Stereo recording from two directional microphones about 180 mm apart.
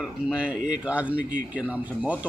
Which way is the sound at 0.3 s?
5° right (ahead or behind).